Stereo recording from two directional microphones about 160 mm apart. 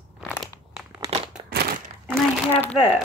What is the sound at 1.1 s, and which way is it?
Crumpling, 45° right (ahead or behind).